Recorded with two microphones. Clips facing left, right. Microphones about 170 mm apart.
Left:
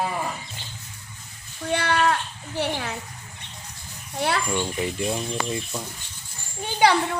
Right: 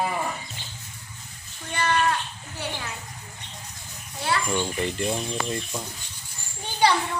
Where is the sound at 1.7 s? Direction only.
70° left (ahead or behind).